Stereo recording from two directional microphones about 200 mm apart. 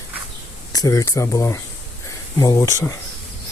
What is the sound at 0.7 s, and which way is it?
Speech, 15° left (ahead or behind).